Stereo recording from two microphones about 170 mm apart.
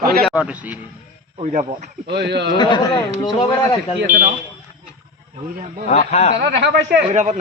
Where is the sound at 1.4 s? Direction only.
45° right (ahead or behind).